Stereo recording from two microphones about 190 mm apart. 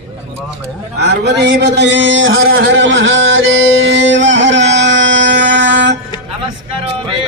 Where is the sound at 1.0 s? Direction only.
65° right (ahead or behind); by 2.5 s 90° right.